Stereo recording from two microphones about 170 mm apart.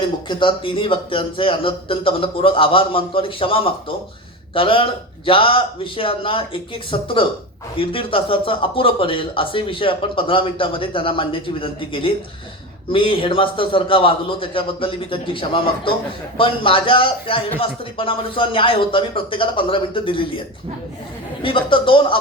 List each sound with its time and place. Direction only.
0.3 s speech: 30° left (ahead or behind)
21.4 s speech: 30° left (ahead or behind)